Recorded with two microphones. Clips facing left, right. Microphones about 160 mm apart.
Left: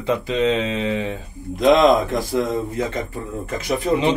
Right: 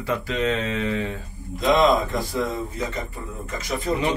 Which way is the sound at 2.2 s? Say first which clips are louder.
Left 5 dB; 45° left (ahead or behind).